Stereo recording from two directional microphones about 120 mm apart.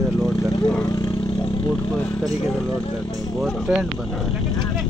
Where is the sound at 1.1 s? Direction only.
50° left (ahead or behind).